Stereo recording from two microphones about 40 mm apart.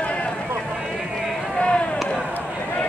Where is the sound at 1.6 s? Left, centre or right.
Left.